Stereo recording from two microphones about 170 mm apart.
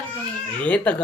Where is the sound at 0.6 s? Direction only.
5° left (ahead or behind).